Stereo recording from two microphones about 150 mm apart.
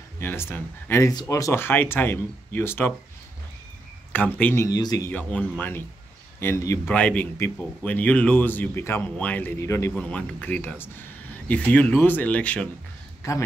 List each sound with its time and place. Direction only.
0.2 s speech: 15° left (ahead or behind)
4.4 s speech: 10° left (ahead or behind)
4.6 s speech: 25° left (ahead or behind)
5.1 s speech: 10° left (ahead or behind)
6.9 s speech: 10° left (ahead or behind)